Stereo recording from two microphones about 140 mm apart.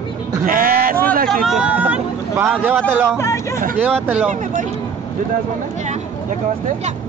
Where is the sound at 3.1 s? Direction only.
20° left (ahead or behind).